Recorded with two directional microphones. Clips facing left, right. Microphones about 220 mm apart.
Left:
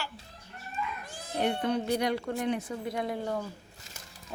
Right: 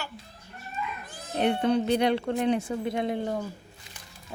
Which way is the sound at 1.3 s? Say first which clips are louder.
Right 5 dB; 25° right (ahead or behind).